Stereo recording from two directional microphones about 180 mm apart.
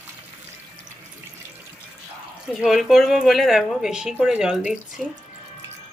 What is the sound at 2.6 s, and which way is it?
Speech, centre (ahead or behind).